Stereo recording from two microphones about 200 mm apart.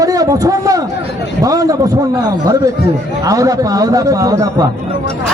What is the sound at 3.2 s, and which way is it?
A man's voice, 15° right (ahead or behind).